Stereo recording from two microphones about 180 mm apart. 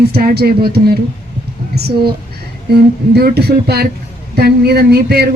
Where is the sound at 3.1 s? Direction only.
65° right (ahead or behind).